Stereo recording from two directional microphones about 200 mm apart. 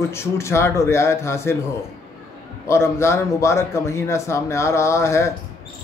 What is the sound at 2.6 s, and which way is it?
Speech, 15° left (ahead or behind).